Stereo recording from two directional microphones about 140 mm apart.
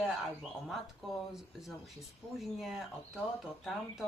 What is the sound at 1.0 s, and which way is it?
A woman's voice, centre (ahead or behind).